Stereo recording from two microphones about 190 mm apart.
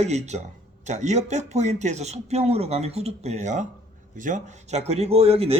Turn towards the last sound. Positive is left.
turn(degrees=-30)  # may be behind; listen again after turning